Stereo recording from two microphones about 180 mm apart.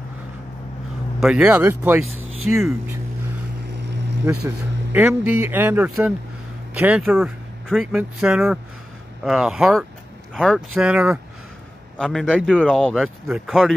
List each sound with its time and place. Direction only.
1.2 s speech: 5° right (ahead or behind)
3.7 s boat: 70° right (ahead or behind)
4.9 s speech: 10° right (ahead or behind)